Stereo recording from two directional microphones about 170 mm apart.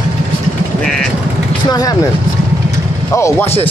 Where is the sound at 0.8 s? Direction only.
Centre (ahead or behind).